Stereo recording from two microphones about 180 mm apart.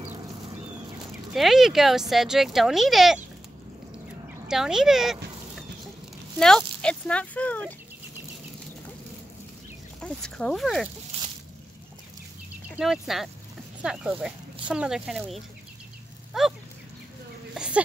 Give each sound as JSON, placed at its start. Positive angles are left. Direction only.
{"t": 1.3, "sound": "speech", "side_deg": 0}
{"t": 4.5, "sound": "speech", "side_deg": -5}
{"t": 6.4, "sound": "speech", "side_deg": 5}
{"t": 9.9, "sound": "speech", "side_deg": 5}
{"t": 11.1, "sound": "squish", "side_deg": -35}
{"t": 12.7, "sound": "speech", "side_deg": -5}
{"t": 17.6, "sound": "a sound", "side_deg": -5}